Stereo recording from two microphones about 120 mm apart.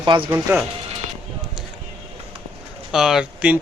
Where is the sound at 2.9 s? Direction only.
5° right (ahead or behind).